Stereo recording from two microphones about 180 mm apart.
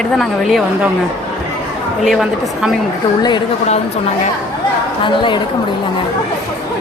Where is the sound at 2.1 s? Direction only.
Centre (ahead or behind).